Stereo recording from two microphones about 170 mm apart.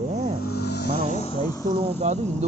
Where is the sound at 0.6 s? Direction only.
75° left (ahead or behind).